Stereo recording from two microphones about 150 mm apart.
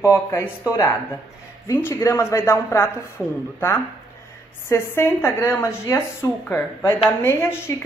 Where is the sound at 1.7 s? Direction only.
15° left (ahead or behind).